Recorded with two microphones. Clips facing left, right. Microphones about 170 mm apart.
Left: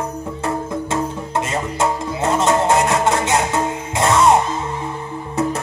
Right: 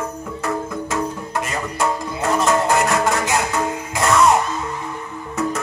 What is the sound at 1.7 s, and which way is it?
Music, 25° left (ahead or behind).